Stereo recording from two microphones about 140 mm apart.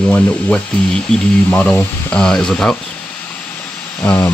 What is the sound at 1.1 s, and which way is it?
Speech, 5° left (ahead or behind).